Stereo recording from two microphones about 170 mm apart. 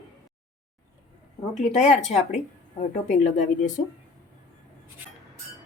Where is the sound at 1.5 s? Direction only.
40° left (ahead or behind).